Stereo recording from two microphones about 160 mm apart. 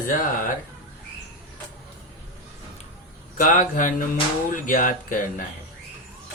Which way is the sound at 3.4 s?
60° left (ahead or behind).